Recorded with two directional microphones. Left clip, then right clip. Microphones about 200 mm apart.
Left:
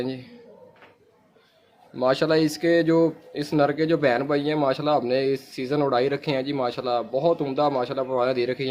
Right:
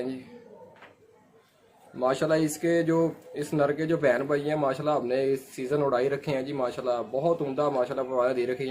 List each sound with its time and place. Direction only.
2.0 s speech: 50° left (ahead or behind)